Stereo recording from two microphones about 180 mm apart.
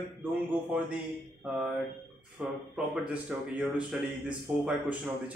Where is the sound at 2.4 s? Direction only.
5° right (ahead or behind).